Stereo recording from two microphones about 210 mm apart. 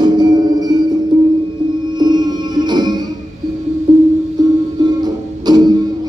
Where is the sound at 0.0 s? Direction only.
20° right (ahead or behind).